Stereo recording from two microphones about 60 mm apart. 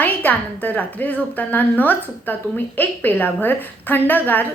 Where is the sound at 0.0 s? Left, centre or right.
Left.